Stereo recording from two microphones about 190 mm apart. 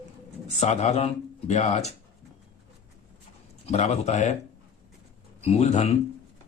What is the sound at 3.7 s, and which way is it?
Speech, 35° left (ahead or behind).